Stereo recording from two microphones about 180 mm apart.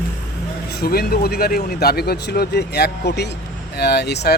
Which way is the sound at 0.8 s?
60° left (ahead or behind).